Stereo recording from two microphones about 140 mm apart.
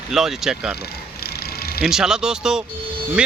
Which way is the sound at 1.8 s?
5° right (ahead or behind).